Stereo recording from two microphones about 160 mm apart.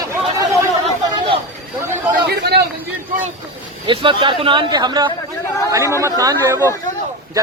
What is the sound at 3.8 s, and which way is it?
Speech, 30° right (ahead or behind).